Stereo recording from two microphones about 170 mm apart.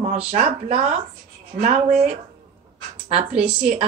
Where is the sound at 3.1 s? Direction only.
40° right (ahead or behind).